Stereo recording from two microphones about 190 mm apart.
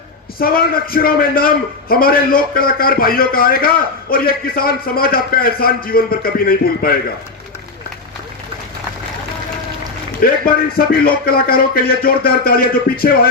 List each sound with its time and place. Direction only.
0.3 s a man's voice: 50° left (ahead or behind)
10.2 s a man's voice: 50° left (ahead or behind)